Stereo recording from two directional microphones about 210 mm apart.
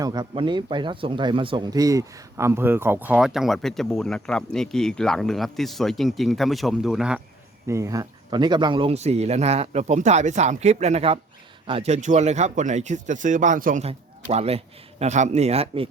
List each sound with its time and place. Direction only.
0.0 s speech: 20° right (ahead or behind); by 7.2 s 5° right (ahead or behind)
7.7 s speech: 15° right (ahead or behind)